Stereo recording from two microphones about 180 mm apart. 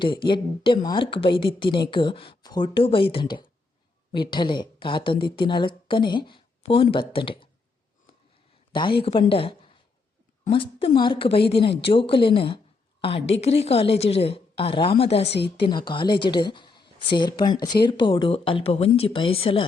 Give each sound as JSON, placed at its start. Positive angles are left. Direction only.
{"t": 0.0, "sound": "speech", "side_deg": 25}
{"t": 8.7, "sound": "a woman's voice", "side_deg": 25}